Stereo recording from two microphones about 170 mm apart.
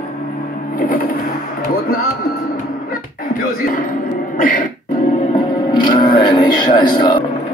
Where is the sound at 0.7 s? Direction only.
55° left (ahead or behind).